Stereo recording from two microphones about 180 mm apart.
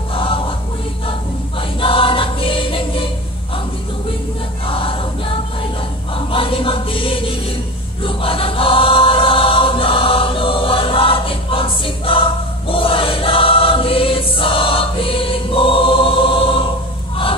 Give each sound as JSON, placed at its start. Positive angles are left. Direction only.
{"t": 0.1, "sound": "music", "side_deg": 30}
{"t": 1.8, "sound": "choir", "side_deg": 30}
{"t": 4.6, "sound": "choir", "side_deg": 30}
{"t": 6.1, "sound": "music", "side_deg": 30}
{"t": 8.0, "sound": "choir", "side_deg": 30}